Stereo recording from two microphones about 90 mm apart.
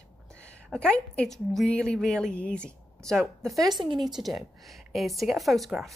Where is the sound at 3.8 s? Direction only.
55° right (ahead or behind).